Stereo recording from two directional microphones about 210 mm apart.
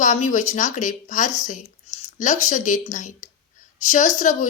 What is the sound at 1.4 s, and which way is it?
Squish, 35° left (ahead or behind).